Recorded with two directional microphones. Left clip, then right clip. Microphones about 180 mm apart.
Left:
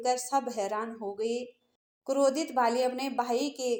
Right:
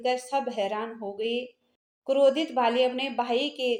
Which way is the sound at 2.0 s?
40° left (ahead or behind).